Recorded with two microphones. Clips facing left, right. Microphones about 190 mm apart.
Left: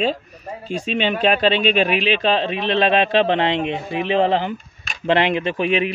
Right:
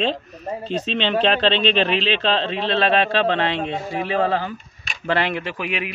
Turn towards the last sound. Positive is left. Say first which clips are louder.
# left 7 dB
turn(degrees=25)  # may be behind; listen again after turning